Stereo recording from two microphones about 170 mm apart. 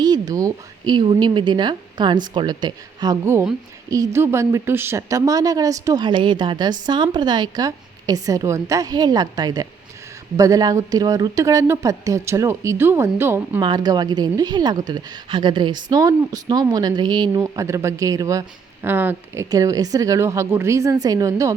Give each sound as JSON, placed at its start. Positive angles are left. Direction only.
{"t": 0.0, "sound": "a woman's voice", "side_deg": -25}
{"t": 13.6, "sound": "a woman's voice", "side_deg": -25}